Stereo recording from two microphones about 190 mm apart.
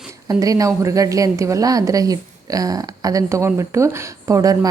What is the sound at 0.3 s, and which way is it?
A woman's voice, 20° right (ahead or behind).